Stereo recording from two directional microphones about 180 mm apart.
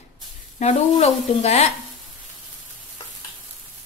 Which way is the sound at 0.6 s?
40° left (ahead or behind).